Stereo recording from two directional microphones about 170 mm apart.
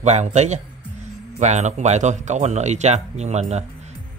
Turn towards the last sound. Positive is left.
turn(degrees=-40)  # may be behind; listen again after turning